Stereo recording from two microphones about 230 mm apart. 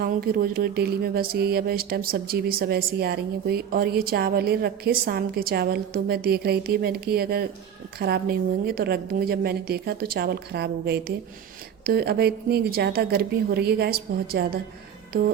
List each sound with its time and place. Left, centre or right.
0.0 s a woman's voice: right